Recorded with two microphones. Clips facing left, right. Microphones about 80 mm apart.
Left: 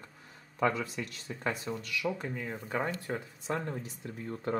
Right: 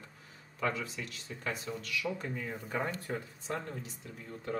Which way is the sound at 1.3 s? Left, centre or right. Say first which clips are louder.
Left 4 dB; left.